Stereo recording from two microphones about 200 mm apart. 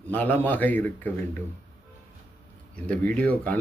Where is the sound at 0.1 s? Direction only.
10° left (ahead or behind).